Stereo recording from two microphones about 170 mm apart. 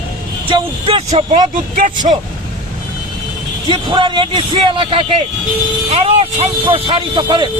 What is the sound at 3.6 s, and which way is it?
Speech, 30° right (ahead or behind).